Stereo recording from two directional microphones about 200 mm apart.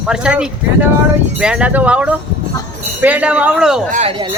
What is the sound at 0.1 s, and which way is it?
Speech, 5° right (ahead or behind).